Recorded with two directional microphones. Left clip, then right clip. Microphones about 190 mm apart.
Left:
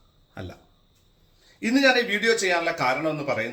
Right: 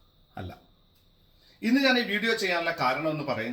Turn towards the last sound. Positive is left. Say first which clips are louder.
# left 3 dB
turn(degrees=10)  # may be behind; listen again after turning